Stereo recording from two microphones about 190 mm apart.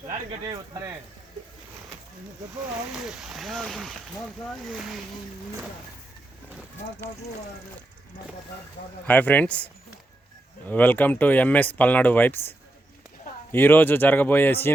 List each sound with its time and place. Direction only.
0.4 s speech: 20° right (ahead or behind)
2.9 s speech: centre (ahead or behind)
9.0 s speech: 10° left (ahead or behind)
10.7 s speech: 10° left (ahead or behind)